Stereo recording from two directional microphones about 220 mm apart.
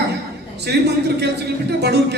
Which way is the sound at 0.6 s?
50° right (ahead or behind).